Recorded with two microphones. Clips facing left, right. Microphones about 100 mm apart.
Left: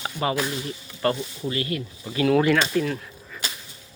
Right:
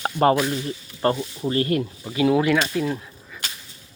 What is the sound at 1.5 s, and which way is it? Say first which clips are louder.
Speech: right 6 dB; 40° right (ahead or behind).